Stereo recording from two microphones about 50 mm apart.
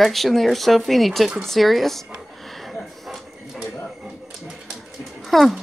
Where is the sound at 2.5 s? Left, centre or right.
Centre.